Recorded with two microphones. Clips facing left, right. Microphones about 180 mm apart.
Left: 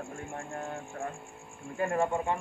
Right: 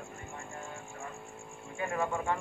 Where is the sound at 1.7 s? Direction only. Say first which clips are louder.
Left 5 dB; 45° left (ahead or behind).